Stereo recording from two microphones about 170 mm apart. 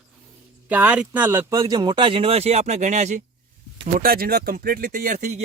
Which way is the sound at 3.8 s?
60° right (ahead or behind).